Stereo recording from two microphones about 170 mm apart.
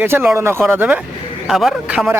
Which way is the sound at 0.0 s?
15° right (ahead or behind).